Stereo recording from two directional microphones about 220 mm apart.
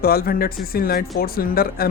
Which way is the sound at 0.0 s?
45° left (ahead or behind).